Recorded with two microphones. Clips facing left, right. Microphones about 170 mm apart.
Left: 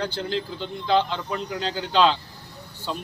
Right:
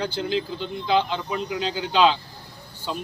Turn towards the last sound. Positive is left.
turn(degrees=-5)  # may be behind; listen again after turning